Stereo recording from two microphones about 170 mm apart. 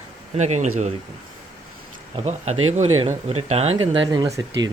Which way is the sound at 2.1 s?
40° right (ahead or behind).